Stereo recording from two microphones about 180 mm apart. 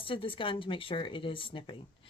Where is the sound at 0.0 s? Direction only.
30° left (ahead or behind).